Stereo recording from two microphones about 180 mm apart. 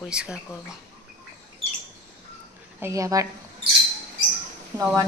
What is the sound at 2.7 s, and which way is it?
Speech, 15° right (ahead or behind).